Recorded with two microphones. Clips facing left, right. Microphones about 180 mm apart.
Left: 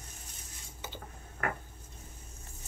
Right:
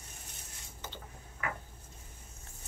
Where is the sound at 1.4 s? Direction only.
55° left (ahead or behind).